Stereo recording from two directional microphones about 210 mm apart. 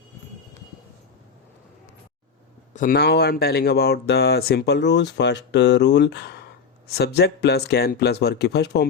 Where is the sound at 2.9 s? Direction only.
50° left (ahead or behind).